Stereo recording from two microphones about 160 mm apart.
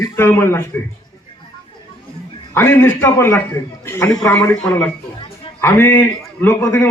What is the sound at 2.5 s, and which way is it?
A man's voice, 15° left (ahead or behind).